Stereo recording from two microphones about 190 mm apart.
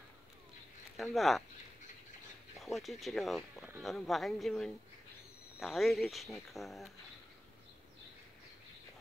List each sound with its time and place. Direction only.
0.9 s speech: centre (ahead or behind)
2.6 s speech: centre (ahead or behind)